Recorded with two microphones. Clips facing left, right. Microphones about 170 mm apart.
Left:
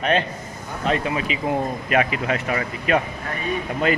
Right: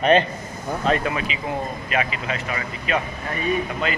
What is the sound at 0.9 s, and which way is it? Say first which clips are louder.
Speech: even; 25° left (ahead or behind).